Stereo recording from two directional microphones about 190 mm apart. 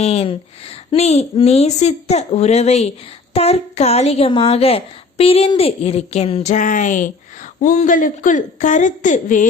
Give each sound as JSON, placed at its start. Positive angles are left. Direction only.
{"t": 0.0, "sound": "a woman's voice", "side_deg": 30}